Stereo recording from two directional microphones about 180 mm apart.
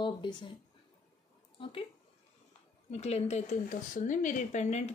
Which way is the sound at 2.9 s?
35° left (ahead or behind).